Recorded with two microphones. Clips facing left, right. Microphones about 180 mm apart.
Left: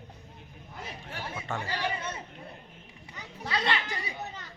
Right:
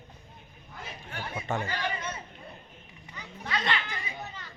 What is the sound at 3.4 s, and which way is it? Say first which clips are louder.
Children playing: left 1 dB; 35° left (ahead or behind).